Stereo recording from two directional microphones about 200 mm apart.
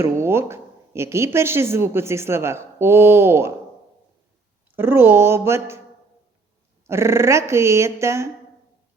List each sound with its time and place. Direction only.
0.0 s speech: 10° right (ahead or behind)
4.7 s speech: 10° right (ahead or behind)
6.8 s speech: 15° right (ahead or behind)